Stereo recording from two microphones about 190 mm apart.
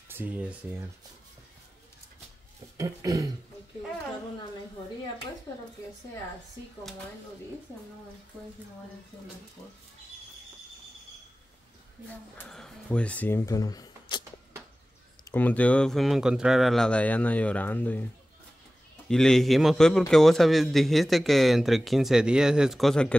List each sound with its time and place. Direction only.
0.1 s speech: 10° right (ahead or behind)
2.8 s speech: 20° right (ahead or behind)
12.4 s speech: 5° left (ahead or behind); by 14.2 s 20° left (ahead or behind)
15.3 s speech: 10° left (ahead or behind)
19.0 s a man's voice: 5° left (ahead or behind)